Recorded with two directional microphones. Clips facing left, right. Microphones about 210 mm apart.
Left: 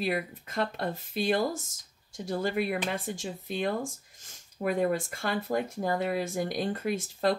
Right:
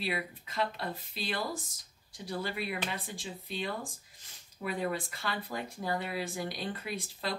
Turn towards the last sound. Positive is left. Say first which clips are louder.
# left 9 dB
turn(degrees=45)  # may be behind; listen again after turning